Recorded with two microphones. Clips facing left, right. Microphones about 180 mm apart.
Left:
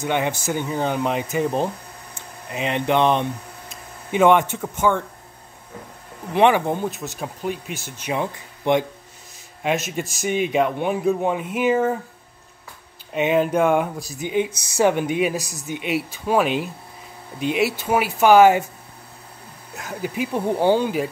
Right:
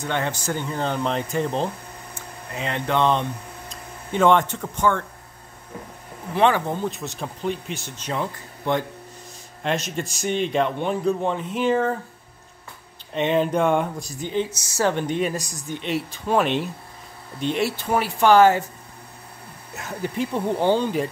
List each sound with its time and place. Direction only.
0.0 s a man's voice: 10° left (ahead or behind)
6.3 s a man's voice: 15° left (ahead or behind)
6.9 s a man's voice: 5° left (ahead or behind)
9.6 s a man's voice: 5° left (ahead or behind)
13.1 s a man's voice: 5° left (ahead or behind)
19.7 s a man's voice: centre (ahead or behind)